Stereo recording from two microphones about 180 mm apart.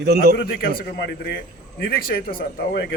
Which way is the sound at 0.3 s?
60° left (ahead or behind).